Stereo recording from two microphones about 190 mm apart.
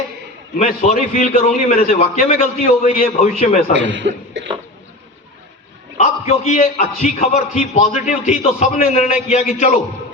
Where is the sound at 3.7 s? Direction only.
70° right (ahead or behind).